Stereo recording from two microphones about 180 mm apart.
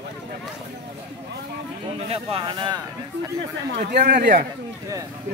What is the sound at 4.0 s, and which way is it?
Speech, 55° right (ahead or behind).